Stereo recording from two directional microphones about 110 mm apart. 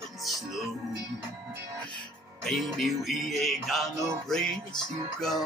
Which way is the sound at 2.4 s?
Centre (ahead or behind).